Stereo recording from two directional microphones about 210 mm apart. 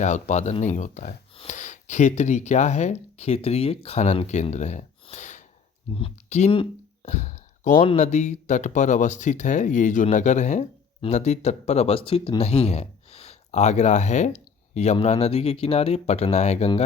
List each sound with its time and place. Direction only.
0.0 s speech: 35° left (ahead or behind)